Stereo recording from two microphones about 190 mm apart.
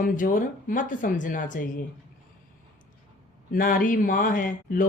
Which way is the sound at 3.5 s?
45° left (ahead or behind).